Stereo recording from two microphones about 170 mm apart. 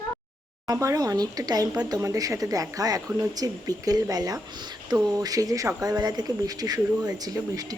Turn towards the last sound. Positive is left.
turn(degrees=-20)  # may be behind; listen again after turning